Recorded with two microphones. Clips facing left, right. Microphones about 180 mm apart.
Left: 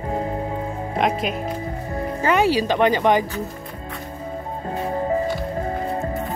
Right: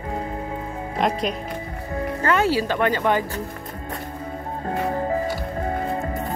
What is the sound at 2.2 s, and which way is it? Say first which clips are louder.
Speech: left 2 dB; 15° left (ahead or behind).